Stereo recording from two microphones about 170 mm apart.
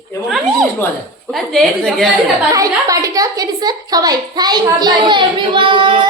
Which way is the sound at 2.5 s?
20° right (ahead or behind).